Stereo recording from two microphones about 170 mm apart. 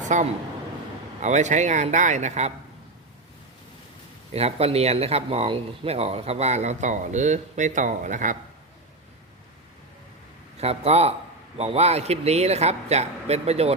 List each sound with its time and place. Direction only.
0.1 s a man's voice: 45° right (ahead or behind)
4.4 s speech: 35° right (ahead or behind)
10.6 s speech: 40° right (ahead or behind)